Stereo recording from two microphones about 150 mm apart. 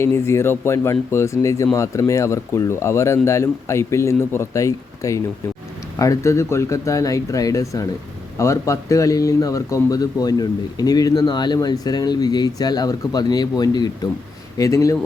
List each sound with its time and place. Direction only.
0.0 s speech: 15° left (ahead or behind)